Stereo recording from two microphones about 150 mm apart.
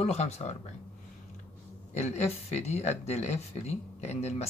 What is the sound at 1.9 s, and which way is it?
Speech, 45° left (ahead or behind).